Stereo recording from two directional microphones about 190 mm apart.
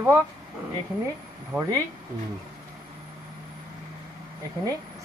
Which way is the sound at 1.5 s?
5° right (ahead or behind).